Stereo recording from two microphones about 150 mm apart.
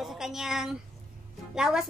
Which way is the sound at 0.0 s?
Centre (ahead or behind).